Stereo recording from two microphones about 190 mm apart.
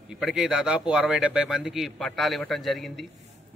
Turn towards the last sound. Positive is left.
turn(degrees=0)  # may be behind; listen again after turning